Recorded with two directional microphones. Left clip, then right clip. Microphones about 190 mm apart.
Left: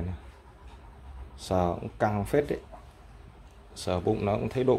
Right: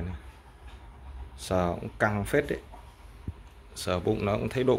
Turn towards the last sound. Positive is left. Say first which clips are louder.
# even
turn(degrees=10)  # may be behind; listen again after turning